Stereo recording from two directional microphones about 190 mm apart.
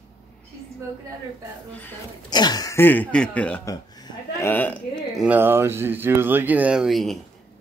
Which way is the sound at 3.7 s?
20° left (ahead or behind).